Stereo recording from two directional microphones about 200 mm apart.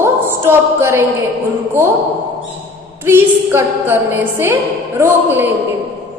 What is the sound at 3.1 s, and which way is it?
A woman's voice, 10° right (ahead or behind).